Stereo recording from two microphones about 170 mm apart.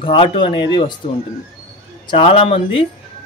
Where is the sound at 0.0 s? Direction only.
30° left (ahead or behind).